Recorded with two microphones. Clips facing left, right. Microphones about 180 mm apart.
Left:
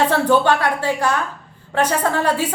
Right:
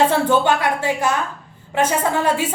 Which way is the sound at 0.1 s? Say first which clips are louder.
Left 1 dB; 20° right (ahead or behind).